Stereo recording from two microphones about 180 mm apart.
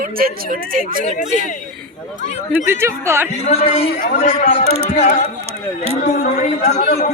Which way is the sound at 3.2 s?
35° left (ahead or behind).